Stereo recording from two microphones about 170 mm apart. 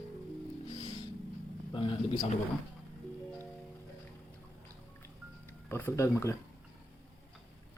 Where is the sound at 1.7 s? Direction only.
30° left (ahead or behind).